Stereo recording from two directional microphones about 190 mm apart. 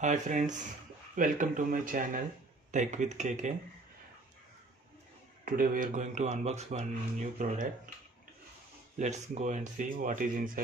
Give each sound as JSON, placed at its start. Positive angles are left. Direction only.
{"t": 0.0, "sound": "speech", "side_deg": -40}
{"t": 5.4, "sound": "speech", "side_deg": -45}
{"t": 8.9, "sound": "speech", "side_deg": -40}